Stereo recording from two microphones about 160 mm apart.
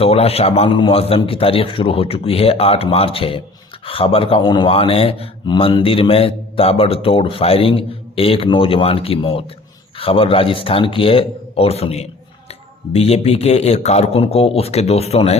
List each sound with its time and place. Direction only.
0.0 s speech: 40° left (ahead or behind)